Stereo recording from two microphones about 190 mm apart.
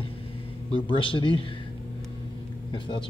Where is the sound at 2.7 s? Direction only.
25° left (ahead or behind).